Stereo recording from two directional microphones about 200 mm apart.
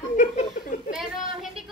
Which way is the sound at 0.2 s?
40° left (ahead or behind).